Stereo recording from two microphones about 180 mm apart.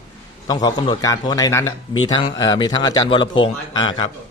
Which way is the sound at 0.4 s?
25° left (ahead or behind).